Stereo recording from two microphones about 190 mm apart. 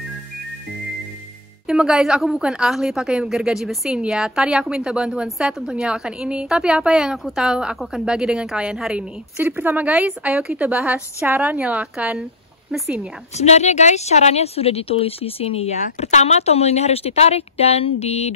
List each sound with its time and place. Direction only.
1.7 s a woman's voice: 5° right (ahead or behind)
13.4 s speech: 35° left (ahead or behind)